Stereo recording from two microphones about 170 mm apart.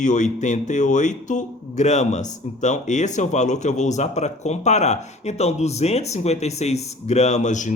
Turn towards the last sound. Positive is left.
turn(degrees=45)  # may be behind; listen again after turning